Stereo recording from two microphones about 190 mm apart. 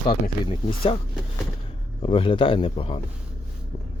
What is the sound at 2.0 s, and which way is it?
Speech, 30° left (ahead or behind).